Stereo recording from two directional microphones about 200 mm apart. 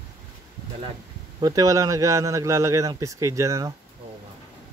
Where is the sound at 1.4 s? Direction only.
20° right (ahead or behind).